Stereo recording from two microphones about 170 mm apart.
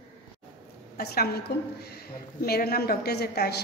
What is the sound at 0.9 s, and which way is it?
Speech, 65° left (ahead or behind).